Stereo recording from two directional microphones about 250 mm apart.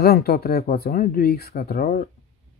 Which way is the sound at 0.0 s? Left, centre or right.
Left.